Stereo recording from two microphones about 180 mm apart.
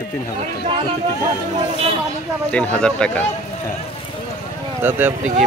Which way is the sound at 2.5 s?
5° left (ahead or behind).